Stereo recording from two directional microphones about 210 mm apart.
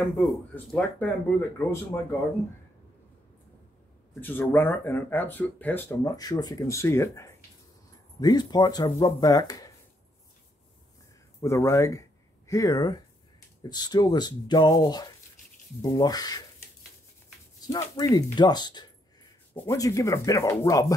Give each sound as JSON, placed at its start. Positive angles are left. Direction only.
{"t": 0.2, "sound": "speech", "side_deg": 5}
{"t": 4.1, "sound": "speech", "side_deg": 10}
{"t": 11.4, "sound": "speech", "side_deg": 15}
{"t": 17.6, "sound": "speech", "side_deg": 15}